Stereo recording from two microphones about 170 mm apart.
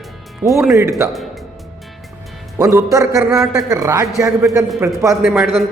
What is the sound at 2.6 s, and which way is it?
Speech, 20° right (ahead or behind).